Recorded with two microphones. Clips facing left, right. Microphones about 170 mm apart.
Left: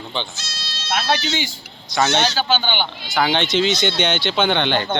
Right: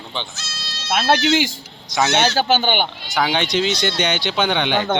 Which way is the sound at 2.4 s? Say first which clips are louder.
Right 3 dB; 45° right (ahead or behind).